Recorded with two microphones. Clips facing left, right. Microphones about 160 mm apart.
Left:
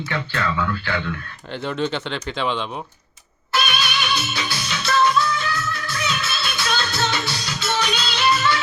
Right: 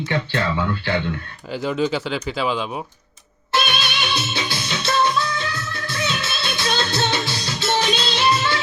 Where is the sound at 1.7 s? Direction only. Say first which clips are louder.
Right 2 dB; 5° right (ahead or behind).